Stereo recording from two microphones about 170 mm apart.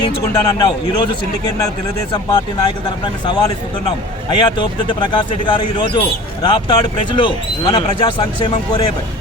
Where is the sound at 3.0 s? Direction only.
25° left (ahead or behind).